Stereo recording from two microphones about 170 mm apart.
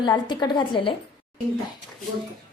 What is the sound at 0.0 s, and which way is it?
Speech, 25° left (ahead or behind).